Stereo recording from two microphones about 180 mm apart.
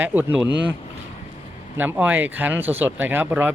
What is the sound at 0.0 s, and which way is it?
Speech, 10° right (ahead or behind).